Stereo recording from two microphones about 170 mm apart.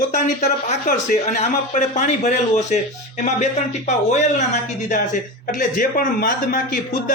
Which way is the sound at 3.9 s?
45° left (ahead or behind).